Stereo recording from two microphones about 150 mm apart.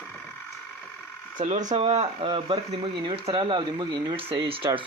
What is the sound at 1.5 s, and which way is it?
Speech, 55° right (ahead or behind).